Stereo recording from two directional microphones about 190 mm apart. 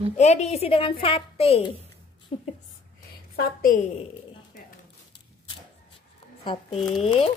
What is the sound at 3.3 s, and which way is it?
Speech, 45° left (ahead or behind).